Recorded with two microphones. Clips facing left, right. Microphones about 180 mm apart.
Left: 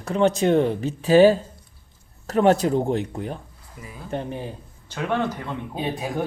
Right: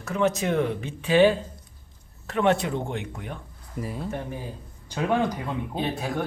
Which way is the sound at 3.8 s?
30° right (ahead or behind).